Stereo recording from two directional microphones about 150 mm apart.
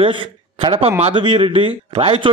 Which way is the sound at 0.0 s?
35° right (ahead or behind).